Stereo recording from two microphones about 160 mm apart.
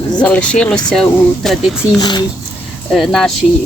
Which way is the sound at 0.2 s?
5° left (ahead or behind).